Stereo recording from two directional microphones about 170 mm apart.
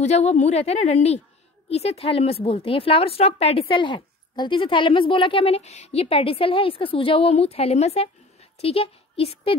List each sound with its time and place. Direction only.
0.0 s a woman's voice: 40° left (ahead or behind)